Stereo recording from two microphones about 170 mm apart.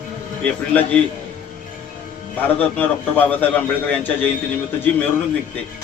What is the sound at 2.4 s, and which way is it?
A man's voice, 10° left (ahead or behind).